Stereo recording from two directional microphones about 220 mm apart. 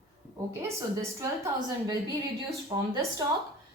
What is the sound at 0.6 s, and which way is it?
A woman's voice, 15° right (ahead or behind).